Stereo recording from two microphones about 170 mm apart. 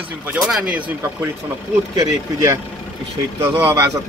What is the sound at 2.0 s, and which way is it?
Speech, 20° right (ahead or behind).